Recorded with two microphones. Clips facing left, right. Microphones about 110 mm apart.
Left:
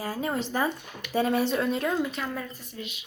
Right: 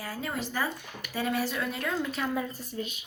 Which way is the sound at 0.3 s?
25° left (ahead or behind).